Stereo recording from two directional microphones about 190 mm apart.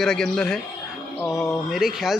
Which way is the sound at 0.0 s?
5° left (ahead or behind).